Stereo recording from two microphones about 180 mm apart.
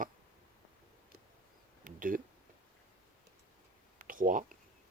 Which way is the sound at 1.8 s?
50° right (ahead or behind).